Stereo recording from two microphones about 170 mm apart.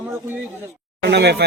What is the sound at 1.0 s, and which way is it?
Speech, 75° right (ahead or behind).